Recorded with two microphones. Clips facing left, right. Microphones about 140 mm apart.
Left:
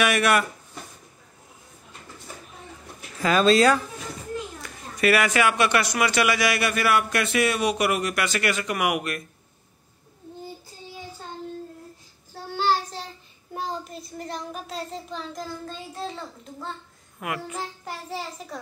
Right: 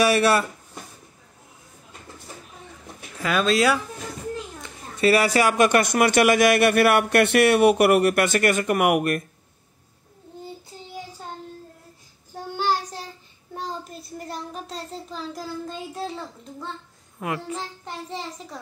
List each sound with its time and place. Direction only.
0.0 s speech: 30° right (ahead or behind)
3.2 s speech: centre (ahead or behind)
4.6 s a man's voice: 25° right (ahead or behind); by 9.2 s 50° right (ahead or behind)
12.5 s child singing: 15° right (ahead or behind)
13.5 s child singing: 5° left (ahead or behind)
17.2 s a child's voice: 30° right (ahead or behind)
17.6 s child singing: 5° left (ahead or behind)